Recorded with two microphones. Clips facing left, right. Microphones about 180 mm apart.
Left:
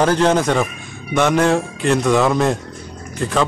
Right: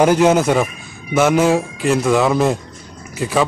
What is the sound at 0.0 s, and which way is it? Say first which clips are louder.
A man's voice: right 3 dB; 10° right (ahead or behind).